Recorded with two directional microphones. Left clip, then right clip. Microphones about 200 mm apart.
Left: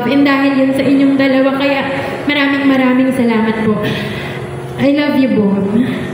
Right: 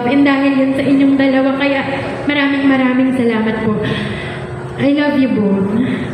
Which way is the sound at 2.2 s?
45° left (ahead or behind).